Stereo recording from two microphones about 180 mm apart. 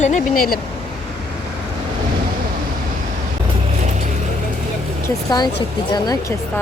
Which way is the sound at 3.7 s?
40° right (ahead or behind).